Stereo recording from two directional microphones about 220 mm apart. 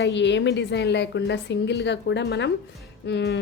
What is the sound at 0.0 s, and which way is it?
A woman's voice, 55° left (ahead or behind).